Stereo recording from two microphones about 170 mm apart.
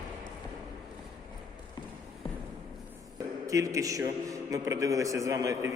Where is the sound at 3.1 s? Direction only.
20° right (ahead or behind).